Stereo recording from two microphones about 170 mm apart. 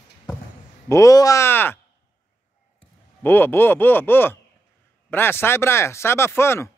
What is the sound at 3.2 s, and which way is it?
Speech, 10° left (ahead or behind).